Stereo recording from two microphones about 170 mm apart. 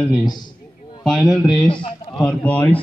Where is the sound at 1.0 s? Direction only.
Centre (ahead or behind).